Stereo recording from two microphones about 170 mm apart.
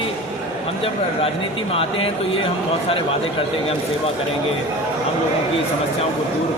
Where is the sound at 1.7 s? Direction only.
35° left (ahead or behind).